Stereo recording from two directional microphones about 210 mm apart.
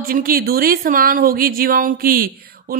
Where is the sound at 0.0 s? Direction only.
45° right (ahead or behind).